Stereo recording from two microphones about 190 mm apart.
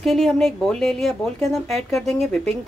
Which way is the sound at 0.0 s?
Centre (ahead or behind).